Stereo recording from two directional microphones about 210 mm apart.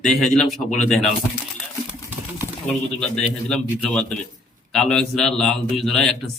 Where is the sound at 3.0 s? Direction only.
5° left (ahead or behind).